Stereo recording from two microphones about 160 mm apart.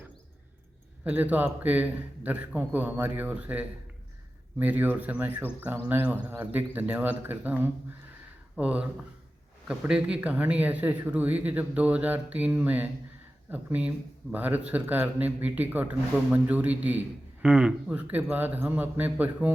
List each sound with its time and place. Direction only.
1.0 s a man's voice: 10° right (ahead or behind)